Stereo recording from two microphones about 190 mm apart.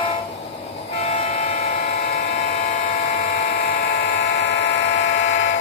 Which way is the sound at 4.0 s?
65° left (ahead or behind).